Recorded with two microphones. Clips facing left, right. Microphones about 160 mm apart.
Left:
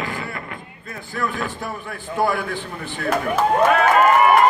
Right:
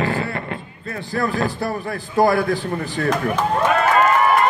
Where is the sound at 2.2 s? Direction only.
40° right (ahead or behind).